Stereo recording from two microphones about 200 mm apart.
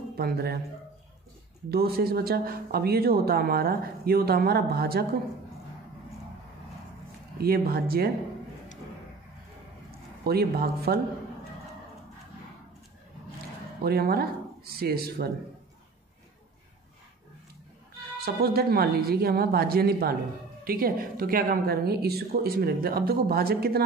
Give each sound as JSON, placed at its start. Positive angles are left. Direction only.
{"t": 0.1, "sound": "speech", "side_deg": -50}
{"t": 1.7, "sound": "speech", "side_deg": -50}
{"t": 7.3, "sound": "speech", "side_deg": -50}
{"t": 9.8, "sound": "speech", "side_deg": -50}
{"t": 13.8, "sound": "speech", "side_deg": -50}
{"t": 18.2, "sound": "speech", "side_deg": -50}